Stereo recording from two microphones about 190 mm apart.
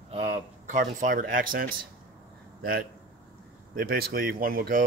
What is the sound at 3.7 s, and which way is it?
Speech, 50° right (ahead or behind).